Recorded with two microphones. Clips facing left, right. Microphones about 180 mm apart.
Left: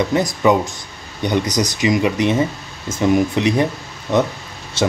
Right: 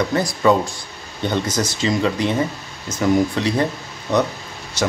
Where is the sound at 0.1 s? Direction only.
20° left (ahead or behind).